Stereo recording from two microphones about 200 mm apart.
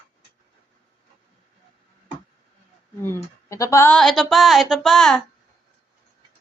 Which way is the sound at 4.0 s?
Centre (ahead or behind).